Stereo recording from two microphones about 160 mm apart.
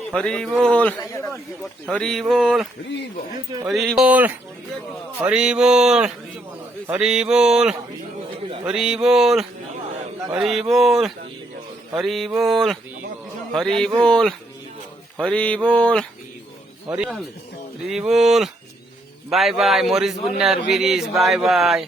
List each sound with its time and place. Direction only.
0.1 s a man's voice: 5° left (ahead or behind)
1.9 s a man's voice: centre (ahead or behind)
3.7 s a man's voice: centre (ahead or behind)
15.2 s mantra: 5° left (ahead or behind)
16.9 s a man's voice: 5° right (ahead or behind)